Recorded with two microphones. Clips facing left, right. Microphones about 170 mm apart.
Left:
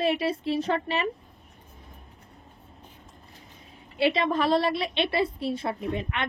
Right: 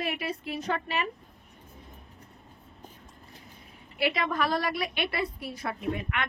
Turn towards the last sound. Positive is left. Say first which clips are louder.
# left 2 dB
turn(degrees=30)  # may be behind; listen again after turning